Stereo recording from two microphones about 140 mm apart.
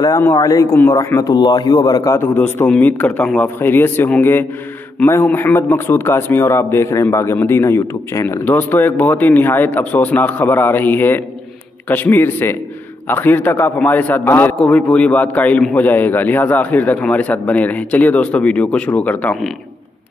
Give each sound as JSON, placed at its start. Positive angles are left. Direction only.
{"t": 0.2, "sound": "a man's voice", "side_deg": 25}